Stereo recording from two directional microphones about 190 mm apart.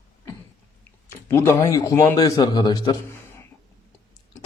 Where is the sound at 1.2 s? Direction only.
15° left (ahead or behind).